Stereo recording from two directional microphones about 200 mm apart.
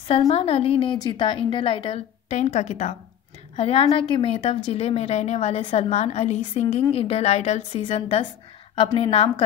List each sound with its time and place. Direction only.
0.3 s a woman's voice: 30° left (ahead or behind)